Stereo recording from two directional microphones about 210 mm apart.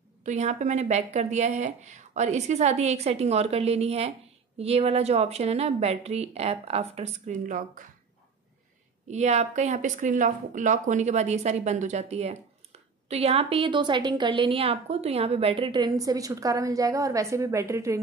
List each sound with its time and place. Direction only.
0.2 s a woman's voice: 35° right (ahead or behind)
9.1 s speech: 35° right (ahead or behind); by 17.9 s 15° right (ahead or behind)